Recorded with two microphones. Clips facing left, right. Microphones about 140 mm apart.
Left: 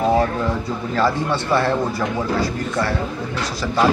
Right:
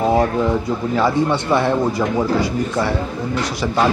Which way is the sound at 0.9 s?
15° right (ahead or behind).